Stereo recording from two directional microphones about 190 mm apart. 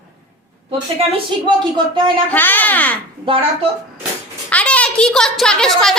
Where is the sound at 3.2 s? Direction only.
30° right (ahead or behind).